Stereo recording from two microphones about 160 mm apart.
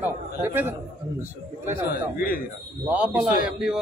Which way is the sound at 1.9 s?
65° left (ahead or behind).